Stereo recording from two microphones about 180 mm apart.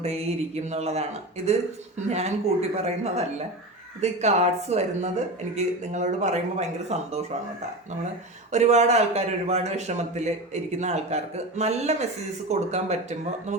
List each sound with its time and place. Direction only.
0.0 s a man's voice: 35° right (ahead or behind)
2.0 s a man's voice: 35° right (ahead or behind)
8.5 s a man's voice: 40° right (ahead or behind)